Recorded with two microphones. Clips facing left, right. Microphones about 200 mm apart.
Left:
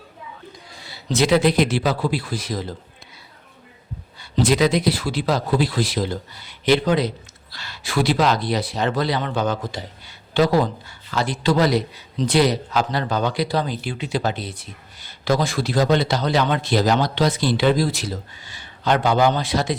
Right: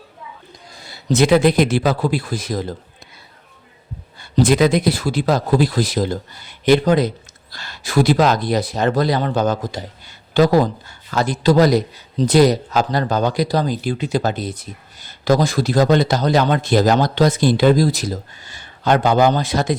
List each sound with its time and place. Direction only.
0.8 s speech: 45° right (ahead or behind)
4.2 s speech: 50° right (ahead or behind)